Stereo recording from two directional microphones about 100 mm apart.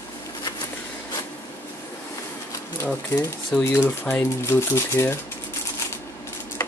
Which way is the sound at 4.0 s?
25° left (ahead or behind).